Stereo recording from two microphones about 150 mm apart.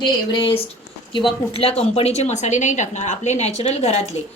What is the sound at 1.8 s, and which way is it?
A woman's voice, 45° left (ahead or behind).